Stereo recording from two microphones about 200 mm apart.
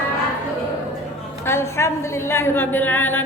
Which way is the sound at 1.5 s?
15° left (ahead or behind).